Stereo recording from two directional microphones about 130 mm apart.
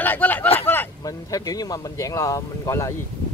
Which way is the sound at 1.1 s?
30° left (ahead or behind).